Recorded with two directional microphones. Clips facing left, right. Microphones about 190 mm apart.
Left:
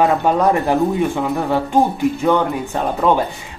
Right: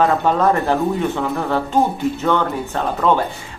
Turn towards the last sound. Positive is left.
turn(degrees=15)  # may be behind; listen again after turning